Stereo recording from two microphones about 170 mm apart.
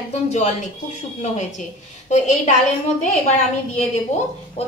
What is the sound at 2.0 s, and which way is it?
A woman's voice, 45° left (ahead or behind).